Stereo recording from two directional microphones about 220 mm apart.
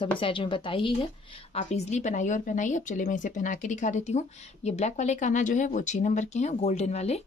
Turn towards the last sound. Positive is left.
turn(degrees=30)  # may be behind; listen again after turning